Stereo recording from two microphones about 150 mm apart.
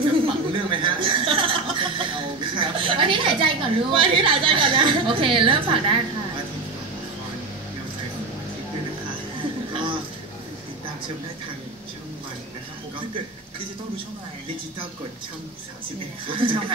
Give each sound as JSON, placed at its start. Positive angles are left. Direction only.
{"t": 0.0, "sound": "chuckle", "side_deg": -35}
{"t": 16.3, "sound": "speech", "side_deg": -35}